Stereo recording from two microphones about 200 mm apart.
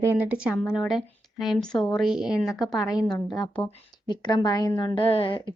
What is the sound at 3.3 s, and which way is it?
A woman's voice, 20° left (ahead or behind).